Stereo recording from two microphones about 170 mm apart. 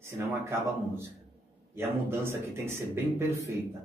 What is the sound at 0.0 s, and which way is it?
A man's voice, 15° right (ahead or behind).